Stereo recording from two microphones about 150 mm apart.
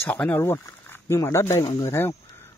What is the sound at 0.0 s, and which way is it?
Speech, 10° left (ahead or behind).